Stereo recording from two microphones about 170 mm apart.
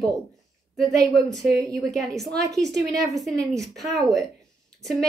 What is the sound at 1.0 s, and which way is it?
Speech, 20° right (ahead or behind).